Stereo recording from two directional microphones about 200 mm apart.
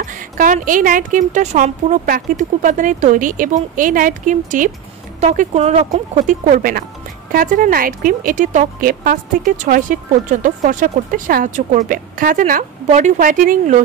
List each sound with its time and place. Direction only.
0.0 s speech: 40° right (ahead or behind)